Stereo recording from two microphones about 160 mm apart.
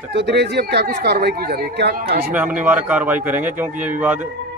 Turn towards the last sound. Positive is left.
turn(degrees=-10)  # may be behind; listen again after turning